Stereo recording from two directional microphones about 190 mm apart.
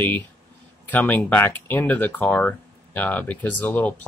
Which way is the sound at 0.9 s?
10° left (ahead or behind).